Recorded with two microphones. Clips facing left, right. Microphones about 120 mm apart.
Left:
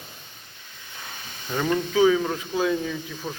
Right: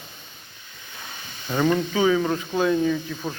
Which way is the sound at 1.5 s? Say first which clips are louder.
Right 1 dB; 5° right (ahead or behind).